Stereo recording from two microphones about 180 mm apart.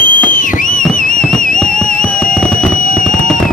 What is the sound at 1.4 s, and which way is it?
Music, 50° left (ahead or behind).